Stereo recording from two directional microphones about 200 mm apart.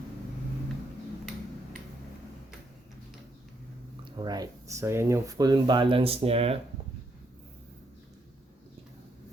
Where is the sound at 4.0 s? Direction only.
20° right (ahead or behind).